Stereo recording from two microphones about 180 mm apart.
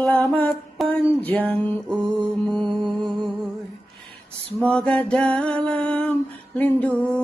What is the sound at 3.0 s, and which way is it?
Music, centre (ahead or behind).